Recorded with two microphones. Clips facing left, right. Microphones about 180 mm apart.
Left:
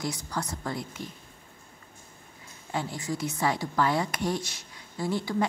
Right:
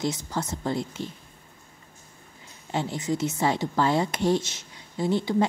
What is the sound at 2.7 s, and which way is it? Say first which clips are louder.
A woman's voice: right 4 dB; 25° right (ahead or behind).